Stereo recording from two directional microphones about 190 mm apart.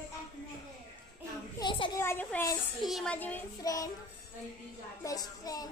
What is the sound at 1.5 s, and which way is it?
Children playing, 20° left (ahead or behind).